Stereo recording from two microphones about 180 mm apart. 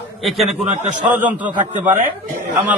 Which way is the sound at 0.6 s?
40° right (ahead or behind).